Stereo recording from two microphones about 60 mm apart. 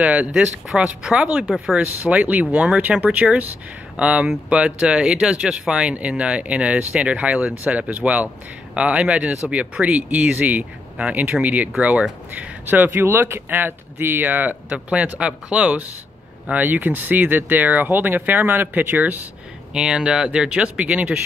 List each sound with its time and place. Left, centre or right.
0.0 s speech: right
0.3 s speech: centre; by 14.6 s right
14.7 s speech: centre
19.7 s speech: centre